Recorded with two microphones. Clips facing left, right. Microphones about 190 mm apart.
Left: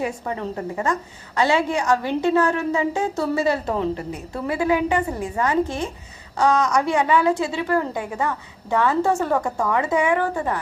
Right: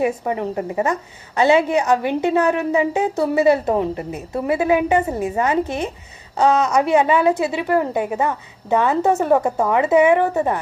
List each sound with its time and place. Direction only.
0.0 s a woman's voice: 15° right (ahead or behind)